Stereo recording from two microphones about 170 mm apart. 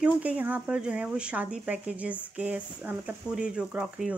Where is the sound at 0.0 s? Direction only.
10° right (ahead or behind).